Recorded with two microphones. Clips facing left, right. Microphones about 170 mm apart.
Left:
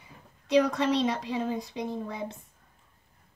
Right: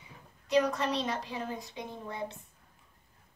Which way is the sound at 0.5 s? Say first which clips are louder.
Left 4 dB; 70° left (ahead or behind).